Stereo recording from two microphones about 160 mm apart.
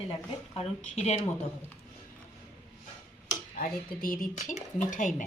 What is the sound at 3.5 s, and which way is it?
Speech, 60° left (ahead or behind).